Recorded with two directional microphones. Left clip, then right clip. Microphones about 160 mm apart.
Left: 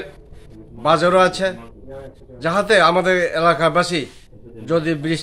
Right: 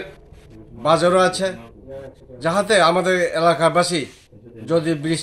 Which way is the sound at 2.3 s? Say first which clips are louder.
Left 1 dB; 5° left (ahead or behind).